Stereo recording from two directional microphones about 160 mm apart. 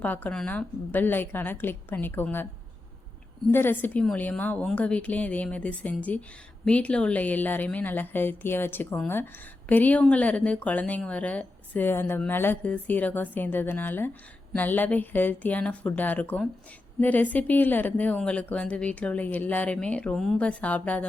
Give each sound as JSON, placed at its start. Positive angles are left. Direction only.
{"t": 0.0, "sound": "a woman's voice", "side_deg": 10}
{"t": 3.5, "sound": "a woman's voice", "side_deg": 15}